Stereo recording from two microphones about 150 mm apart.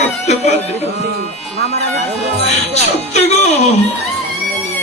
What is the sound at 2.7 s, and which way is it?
Speech, 45° left (ahead or behind).